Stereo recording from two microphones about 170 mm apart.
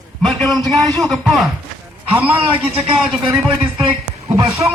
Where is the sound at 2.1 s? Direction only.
10° right (ahead or behind).